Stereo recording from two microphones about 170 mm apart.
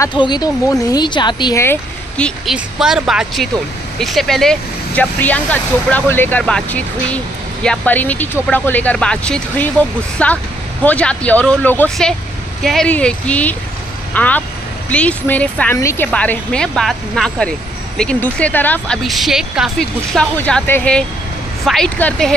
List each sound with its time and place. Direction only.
0.0 s speech: 25° left (ahead or behind)
1.6 s speech: 10° left (ahead or behind)
19.0 s speech: centre (ahead or behind)